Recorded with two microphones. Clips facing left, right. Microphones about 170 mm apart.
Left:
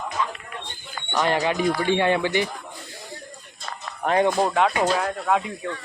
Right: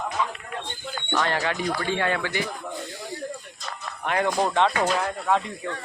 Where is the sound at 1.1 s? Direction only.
15° left (ahead or behind).